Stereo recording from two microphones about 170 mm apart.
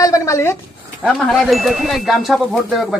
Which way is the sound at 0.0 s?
20° left (ahead or behind).